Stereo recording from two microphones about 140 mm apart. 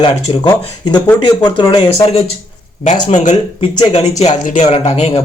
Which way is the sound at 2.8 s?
55° left (ahead or behind).